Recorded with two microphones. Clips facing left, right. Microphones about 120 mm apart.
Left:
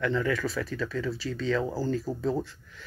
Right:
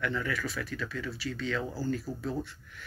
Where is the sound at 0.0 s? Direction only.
30° left (ahead or behind).